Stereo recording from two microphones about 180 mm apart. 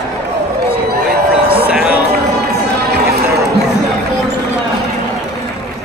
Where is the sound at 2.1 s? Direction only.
65° right (ahead or behind).